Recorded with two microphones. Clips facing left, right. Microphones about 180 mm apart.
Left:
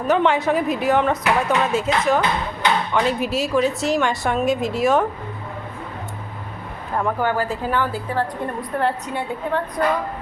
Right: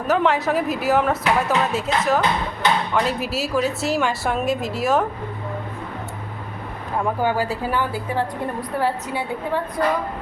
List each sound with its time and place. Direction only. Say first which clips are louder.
0.1 s a woman's voice: left 1 dB; centre (ahead or behind)
7.2 s a woman's voice: even; 10° right (ahead or behind)